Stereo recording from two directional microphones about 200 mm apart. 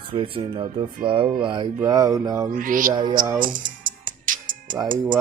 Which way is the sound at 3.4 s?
40° right (ahead or behind).